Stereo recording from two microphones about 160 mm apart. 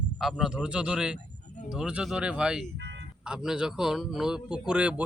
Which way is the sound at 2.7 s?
90° right.